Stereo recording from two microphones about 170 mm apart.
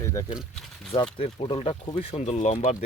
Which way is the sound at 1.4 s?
35° left (ahead or behind).